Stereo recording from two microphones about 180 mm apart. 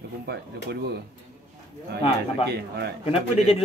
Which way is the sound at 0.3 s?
65° right (ahead or behind).